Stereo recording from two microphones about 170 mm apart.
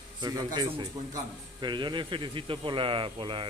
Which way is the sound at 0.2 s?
25° right (ahead or behind).